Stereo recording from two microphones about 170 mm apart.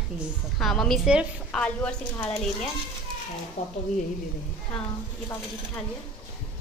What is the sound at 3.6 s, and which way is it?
Speech, 40° left (ahead or behind).